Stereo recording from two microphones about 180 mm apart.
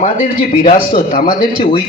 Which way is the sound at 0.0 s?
40° left (ahead or behind).